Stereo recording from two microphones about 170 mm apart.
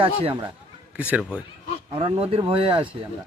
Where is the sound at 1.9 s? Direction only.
35° right (ahead or behind).